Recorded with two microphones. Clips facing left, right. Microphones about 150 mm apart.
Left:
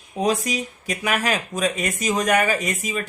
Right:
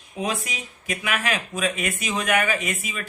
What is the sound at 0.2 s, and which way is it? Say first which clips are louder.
Speech: left 6 dB; 40° left (ahead or behind).